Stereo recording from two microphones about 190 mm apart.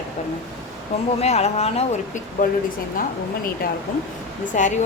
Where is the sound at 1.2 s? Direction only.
35° left (ahead or behind).